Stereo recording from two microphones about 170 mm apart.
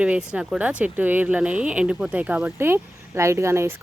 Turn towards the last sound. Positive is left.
turn(degrees=-15)  # may be behind; listen again after turning